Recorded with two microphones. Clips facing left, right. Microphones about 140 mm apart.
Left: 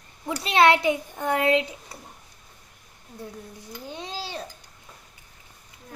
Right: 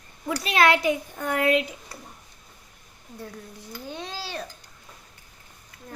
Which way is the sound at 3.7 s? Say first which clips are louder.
Right 1 dB; 20° left (ahead or behind).